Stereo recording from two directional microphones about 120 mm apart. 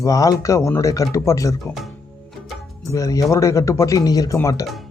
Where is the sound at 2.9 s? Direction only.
25° left (ahead or behind).